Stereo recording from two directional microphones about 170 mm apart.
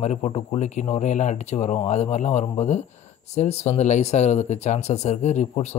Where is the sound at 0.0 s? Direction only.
40° left (ahead or behind).